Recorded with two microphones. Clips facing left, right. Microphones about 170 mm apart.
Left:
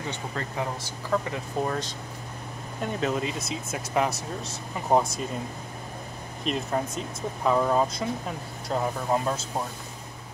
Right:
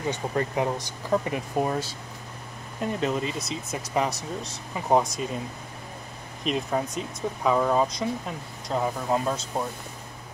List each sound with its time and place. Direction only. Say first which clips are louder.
0.1 s speech: right 6 dB; 20° right (ahead or behind)
2.8 s speech: right 1 dB; centre (ahead or behind)
6.4 s speech: right 1 dB; centre (ahead or behind)